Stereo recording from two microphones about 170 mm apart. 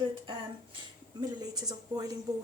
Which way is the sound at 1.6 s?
20° right (ahead or behind).